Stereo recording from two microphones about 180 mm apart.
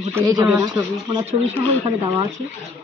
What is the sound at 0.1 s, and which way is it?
Speech, 20° right (ahead or behind).